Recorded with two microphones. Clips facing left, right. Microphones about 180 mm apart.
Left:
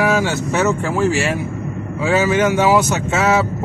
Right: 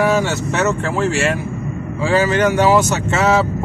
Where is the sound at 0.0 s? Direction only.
5° left (ahead or behind).